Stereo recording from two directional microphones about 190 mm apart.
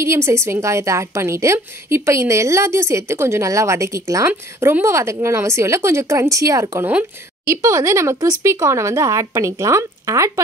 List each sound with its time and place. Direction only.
0.0 s a woman's voice: 15° right (ahead or behind)